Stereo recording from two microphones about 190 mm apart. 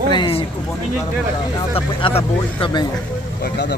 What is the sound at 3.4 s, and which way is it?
Speech, 60° left (ahead or behind).